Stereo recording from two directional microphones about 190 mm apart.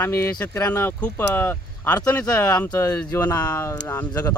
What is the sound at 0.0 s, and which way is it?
Speech, 15° left (ahead or behind).